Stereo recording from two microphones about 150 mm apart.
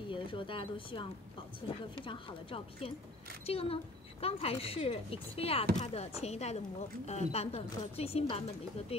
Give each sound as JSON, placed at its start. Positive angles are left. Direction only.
{"t": 0.1, "sound": "speech", "side_deg": 35}